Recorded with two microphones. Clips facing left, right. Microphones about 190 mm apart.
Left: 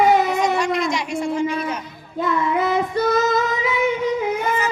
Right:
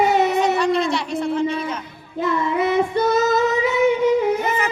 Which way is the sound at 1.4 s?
30° right (ahead or behind).